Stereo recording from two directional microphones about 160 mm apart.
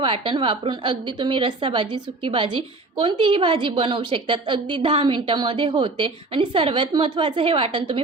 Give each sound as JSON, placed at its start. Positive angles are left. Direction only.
{"t": 0.0, "sound": "a woman's voice", "side_deg": -30}